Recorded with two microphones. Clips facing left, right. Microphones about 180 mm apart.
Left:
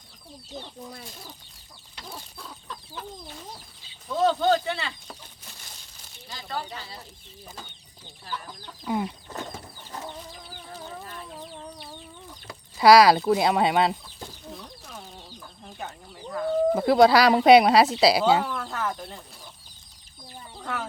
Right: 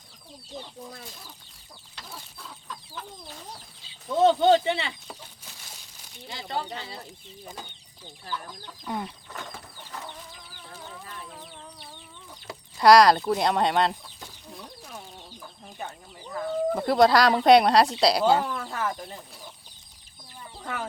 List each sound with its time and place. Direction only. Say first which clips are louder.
4.2 s a sound: right 3 dB; 25° right (ahead or behind)
6.2 s speech: right 2 dB; 25° right (ahead or behind)
8.8 s speech: left 5 dB; 5° left (ahead or behind)
12.7 s speech: left 1 dB; 5° left (ahead or behind)
16.3 s speech: left 4 dB; centre (ahead or behind)